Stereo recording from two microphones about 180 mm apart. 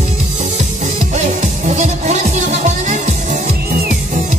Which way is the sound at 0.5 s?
40° right (ahead or behind).